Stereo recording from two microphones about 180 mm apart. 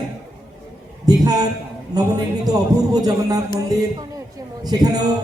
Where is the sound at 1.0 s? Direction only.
20° right (ahead or behind).